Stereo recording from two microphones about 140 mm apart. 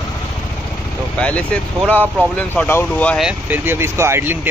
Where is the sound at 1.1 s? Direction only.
10° left (ahead or behind).